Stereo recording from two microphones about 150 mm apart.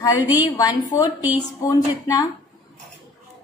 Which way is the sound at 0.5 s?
25° left (ahead or behind).